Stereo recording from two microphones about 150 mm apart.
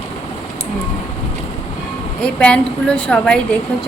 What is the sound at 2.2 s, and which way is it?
A woman's voice, 10° left (ahead or behind).